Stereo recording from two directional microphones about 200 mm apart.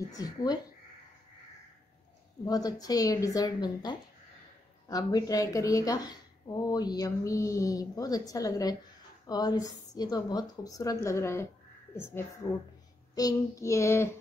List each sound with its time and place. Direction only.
0.1 s speech: 20° left (ahead or behind)
2.4 s speech: 20° left (ahead or behind)